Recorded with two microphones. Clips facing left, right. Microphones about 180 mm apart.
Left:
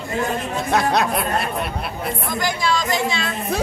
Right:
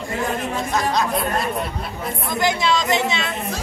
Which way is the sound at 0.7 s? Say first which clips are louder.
Left 3 dB; 65° left (ahead or behind).